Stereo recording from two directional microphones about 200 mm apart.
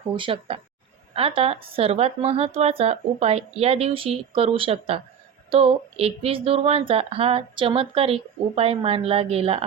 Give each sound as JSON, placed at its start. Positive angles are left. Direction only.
{"t": 0.2, "sound": "a woman's voice", "side_deg": -25}